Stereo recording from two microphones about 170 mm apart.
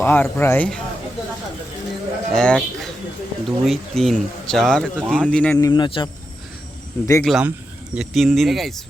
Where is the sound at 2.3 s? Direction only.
5° left (ahead or behind).